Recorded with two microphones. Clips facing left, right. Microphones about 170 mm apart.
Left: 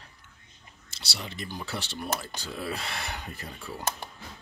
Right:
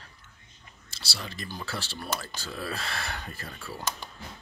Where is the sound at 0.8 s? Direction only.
20° left (ahead or behind).